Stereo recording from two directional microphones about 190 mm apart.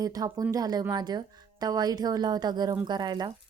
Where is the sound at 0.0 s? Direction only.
20° right (ahead or behind).